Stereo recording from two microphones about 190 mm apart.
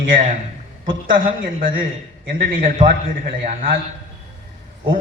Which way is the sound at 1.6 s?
45° right (ahead or behind).